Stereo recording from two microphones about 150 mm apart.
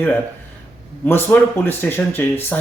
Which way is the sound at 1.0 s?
15° left (ahead or behind).